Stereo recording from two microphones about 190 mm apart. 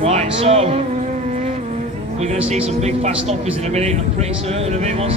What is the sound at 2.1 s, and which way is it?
Speech, 35° right (ahead or behind).